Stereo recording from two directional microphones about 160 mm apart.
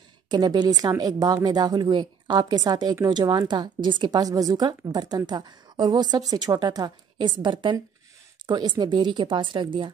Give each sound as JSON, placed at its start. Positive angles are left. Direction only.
{"t": 0.3, "sound": "a woman's voice", "side_deg": -25}